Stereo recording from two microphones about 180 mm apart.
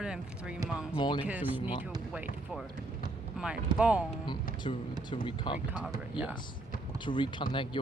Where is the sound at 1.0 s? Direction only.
25° left (ahead or behind).